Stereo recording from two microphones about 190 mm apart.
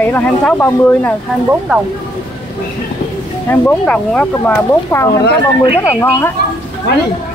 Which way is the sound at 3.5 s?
5° left (ahead or behind).